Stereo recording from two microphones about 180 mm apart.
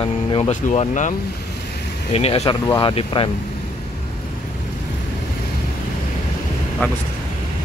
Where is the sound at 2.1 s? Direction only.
35° left (ahead or behind).